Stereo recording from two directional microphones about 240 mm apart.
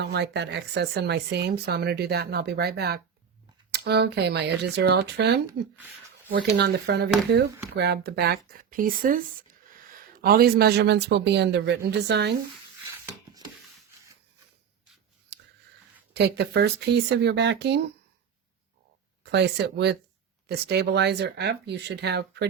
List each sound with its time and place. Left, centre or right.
0.0 s speech: right
5.5 s speech: centre
6.3 s speech: right
15.3 s a sound: right
16.1 s speech: right
19.2 s speech: right